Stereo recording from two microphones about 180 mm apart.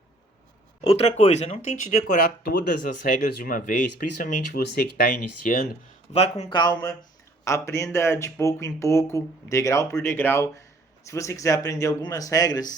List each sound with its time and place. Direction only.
0.9 s speech: 35° left (ahead or behind)
6.1 s speech: 35° left (ahead or behind)
6.5 s speech: 25° left (ahead or behind)